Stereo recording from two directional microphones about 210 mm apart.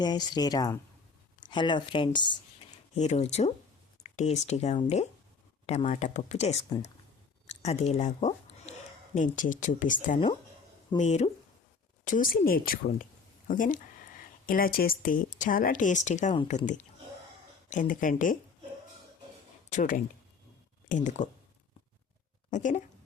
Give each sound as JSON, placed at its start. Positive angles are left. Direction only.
{"t": 0.0, "sound": "speech", "side_deg": 20}
{"t": 2.9, "sound": "speech", "side_deg": 35}
{"t": 7.4, "sound": "a sound", "side_deg": 30}
{"t": 9.1, "sound": "speech", "side_deg": 40}
{"t": 19.7, "sound": "speech", "side_deg": 35}
{"t": 21.0, "sound": "speech", "side_deg": 35}
{"t": 22.4, "sound": "speech", "side_deg": 35}